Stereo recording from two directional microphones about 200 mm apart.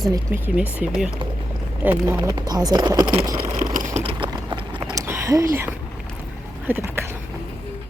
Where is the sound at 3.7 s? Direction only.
35° right (ahead or behind); by 7.1 s 10° right (ahead or behind).